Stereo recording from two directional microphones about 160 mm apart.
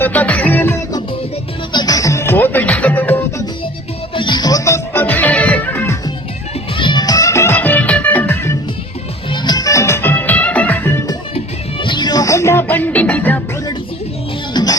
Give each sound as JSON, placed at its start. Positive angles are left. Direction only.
{"t": 0.0, "sound": "music", "side_deg": 10}
{"t": 1.7, "sound": "music", "side_deg": 25}
{"t": 4.1, "sound": "music", "side_deg": 30}
{"t": 6.7, "sound": "music", "side_deg": 30}
{"t": 9.3, "sound": "music", "side_deg": 25}
{"t": 11.3, "sound": "music", "side_deg": 30}
{"t": 14.5, "sound": "music", "side_deg": 25}